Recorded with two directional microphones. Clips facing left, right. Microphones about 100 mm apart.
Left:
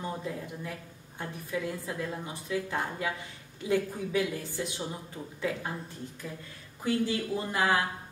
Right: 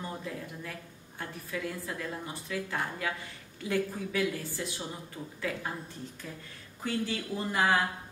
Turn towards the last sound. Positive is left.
turn(degrees=20)  # may be behind; listen again after turning